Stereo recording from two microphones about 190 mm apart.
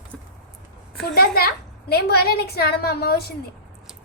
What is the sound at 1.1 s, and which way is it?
A woman's voice, 55° left (ahead or behind).